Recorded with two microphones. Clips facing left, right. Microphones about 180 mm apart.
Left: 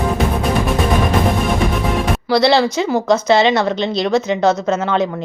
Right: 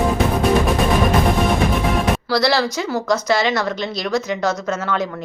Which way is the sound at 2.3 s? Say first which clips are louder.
Left 7 dB; 20° left (ahead or behind).